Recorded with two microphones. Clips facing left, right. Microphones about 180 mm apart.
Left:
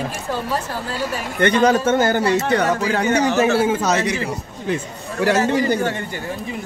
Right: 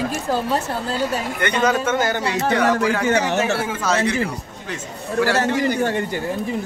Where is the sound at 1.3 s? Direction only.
30° left (ahead or behind).